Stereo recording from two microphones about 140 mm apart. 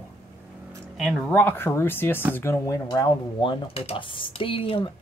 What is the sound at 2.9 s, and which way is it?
Speech, 35° left (ahead or behind).